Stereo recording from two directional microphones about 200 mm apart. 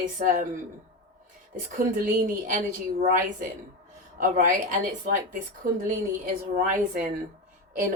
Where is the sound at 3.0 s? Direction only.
45° right (ahead or behind).